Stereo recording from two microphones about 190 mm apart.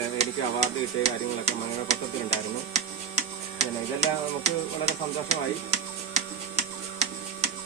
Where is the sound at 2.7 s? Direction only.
35° right (ahead or behind).